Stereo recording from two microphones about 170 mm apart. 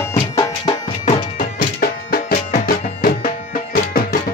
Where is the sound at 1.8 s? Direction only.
60° left (ahead or behind).